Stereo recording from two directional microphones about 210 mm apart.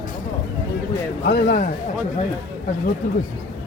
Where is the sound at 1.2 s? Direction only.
55° left (ahead or behind).